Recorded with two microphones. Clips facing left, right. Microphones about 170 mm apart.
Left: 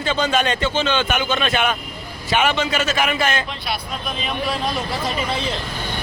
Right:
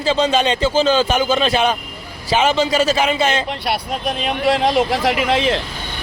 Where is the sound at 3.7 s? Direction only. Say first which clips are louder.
Right 6 dB; 75° right (ahead or behind); by 5.6 s 90° right.